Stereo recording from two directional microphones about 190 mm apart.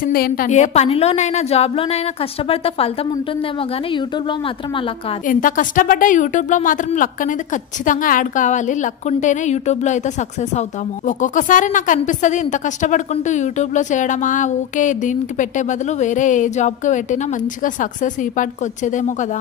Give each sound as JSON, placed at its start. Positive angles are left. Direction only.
{"t": 0.0, "sound": "a woman's voice", "side_deg": 50}
{"t": 5.2, "sound": "a woman's voice", "side_deg": 45}